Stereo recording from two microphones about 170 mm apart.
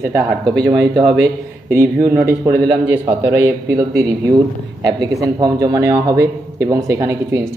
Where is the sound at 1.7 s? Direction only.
15° right (ahead or behind).